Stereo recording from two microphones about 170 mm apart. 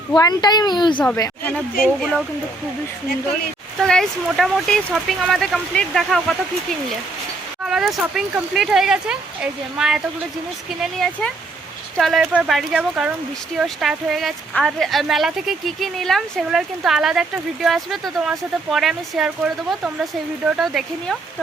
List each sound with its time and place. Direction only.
0.2 s speech: 25° left (ahead or behind)
1.0 s a woman's voice: 15° left (ahead or behind)
2.0 s speech: centre (ahead or behind)
3.8 s speech: centre (ahead or behind)
7.6 s speech: centre (ahead or behind)